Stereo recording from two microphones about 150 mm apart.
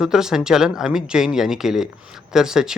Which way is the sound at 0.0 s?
5° right (ahead or behind).